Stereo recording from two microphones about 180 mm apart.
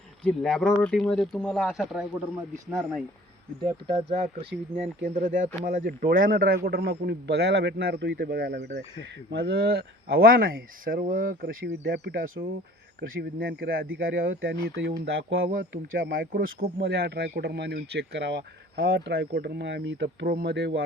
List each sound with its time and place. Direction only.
0.3 s speech: 5° left (ahead or behind)
3.6 s speech: 30° right (ahead or behind)
5.0 s speech: 45° right (ahead or behind)
13.0 s speech: 70° right (ahead or behind)